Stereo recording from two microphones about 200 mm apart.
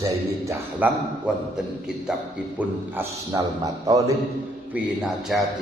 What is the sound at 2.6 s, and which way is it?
A man's voice, 15° right (ahead or behind).